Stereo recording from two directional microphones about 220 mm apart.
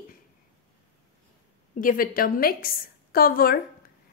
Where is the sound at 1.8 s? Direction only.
40° left (ahead or behind).